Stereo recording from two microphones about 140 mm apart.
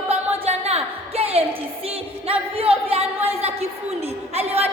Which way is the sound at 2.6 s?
45° right (ahead or behind).